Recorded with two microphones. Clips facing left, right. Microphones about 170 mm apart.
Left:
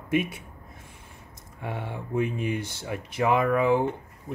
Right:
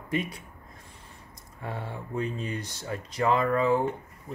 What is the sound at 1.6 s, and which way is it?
Speech, 20° left (ahead or behind).